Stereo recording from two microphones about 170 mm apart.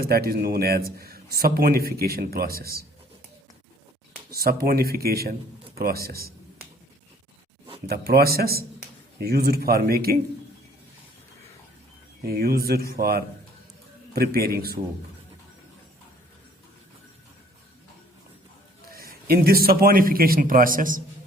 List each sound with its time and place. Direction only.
0.0 s a man's voice: 65° right (ahead or behind)
4.3 s a man's voice: 65° right (ahead or behind)
7.9 s a man's voice: 65° right (ahead or behind)
12.3 s a man's voice: 65° right (ahead or behind)
18.9 s a man's voice: 60° right (ahead or behind)